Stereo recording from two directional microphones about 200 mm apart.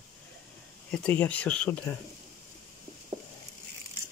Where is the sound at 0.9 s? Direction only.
5° left (ahead or behind).